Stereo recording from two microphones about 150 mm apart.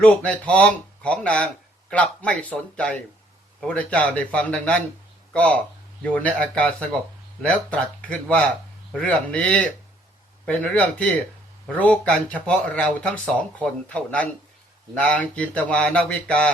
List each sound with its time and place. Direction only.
0.0 s speech: 10° left (ahead or behind)